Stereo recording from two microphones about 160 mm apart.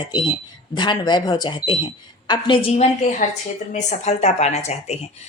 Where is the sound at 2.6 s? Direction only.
40° left (ahead or behind).